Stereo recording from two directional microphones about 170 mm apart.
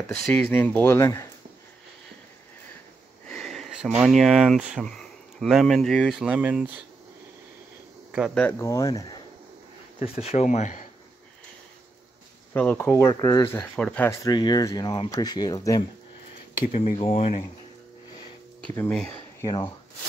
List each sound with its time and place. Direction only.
0.2 s speech: 10° left (ahead or behind)
3.3 s sniff: 5° left (ahead or behind)
3.9 s speech: 5° right (ahead or behind)
8.4 s speech: 15° left (ahead or behind)
9.9 s speech: 35° left (ahead or behind)
12.5 s speech: 10° left (ahead or behind)
13.7 s speech: 5° left (ahead or behind)
14.2 s speech: 25° left (ahead or behind)
16.7 s speech: 40° left (ahead or behind)
18.8 s speech: 5° left (ahead or behind)
19.4 s speech: 25° left (ahead or behind)